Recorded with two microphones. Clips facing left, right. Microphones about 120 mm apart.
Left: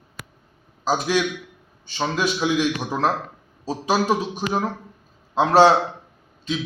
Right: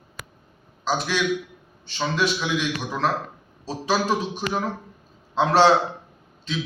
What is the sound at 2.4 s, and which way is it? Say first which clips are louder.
Speech: left 4 dB; 40° left (ahead or behind).